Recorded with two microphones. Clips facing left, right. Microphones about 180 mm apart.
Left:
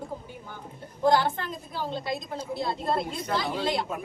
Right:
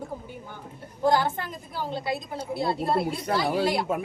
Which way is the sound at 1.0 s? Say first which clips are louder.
Even; 15° right (ahead or behind).